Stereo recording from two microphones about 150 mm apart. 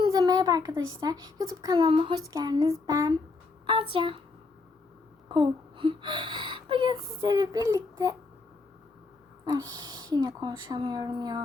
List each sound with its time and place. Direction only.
0.0 s speech: 25° right (ahead or behind)
3.7 s speech: 35° right (ahead or behind)
5.3 s speech: 35° right (ahead or behind)
9.5 s speech: 25° right (ahead or behind)